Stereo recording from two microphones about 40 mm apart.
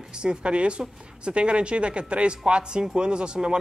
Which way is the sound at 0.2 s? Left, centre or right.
Right.